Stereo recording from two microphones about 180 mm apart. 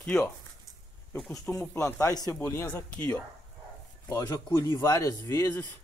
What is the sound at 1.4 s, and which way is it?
Speech, 15° left (ahead or behind).